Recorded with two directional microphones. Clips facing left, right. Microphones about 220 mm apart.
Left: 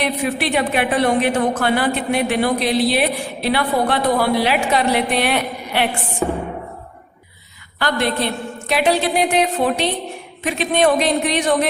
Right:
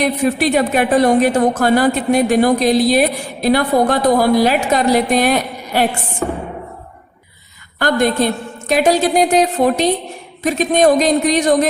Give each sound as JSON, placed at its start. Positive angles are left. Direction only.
{"t": 0.0, "sound": "a woman's voice", "side_deg": -45}
{"t": 7.8, "sound": "a woman's voice", "side_deg": -45}